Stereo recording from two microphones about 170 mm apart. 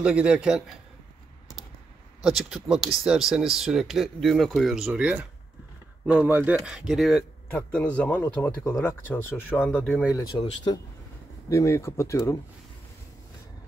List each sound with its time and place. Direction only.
0.0 s speech: 5° right (ahead or behind)
2.2 s speech: 5° right (ahead or behind)
7.5 s speech: 10° left (ahead or behind)
10.3 s speech: 25° left (ahead or behind)